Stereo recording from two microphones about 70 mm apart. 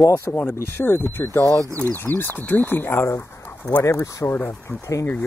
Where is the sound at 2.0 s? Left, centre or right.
Left.